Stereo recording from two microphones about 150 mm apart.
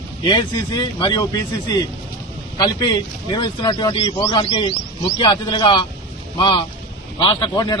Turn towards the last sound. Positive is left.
turn(degrees=30)  # may be behind; listen again after turning